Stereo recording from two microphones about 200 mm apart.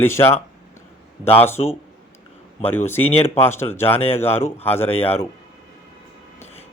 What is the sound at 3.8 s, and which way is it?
A man's voice, 10° left (ahead or behind).